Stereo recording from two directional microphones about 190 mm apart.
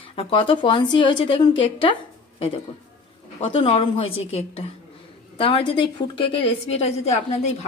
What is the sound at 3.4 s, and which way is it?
Speech, 30° left (ahead or behind).